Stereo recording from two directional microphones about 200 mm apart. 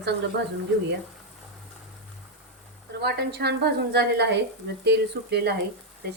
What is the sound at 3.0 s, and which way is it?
A woman's voice, 55° right (ahead or behind).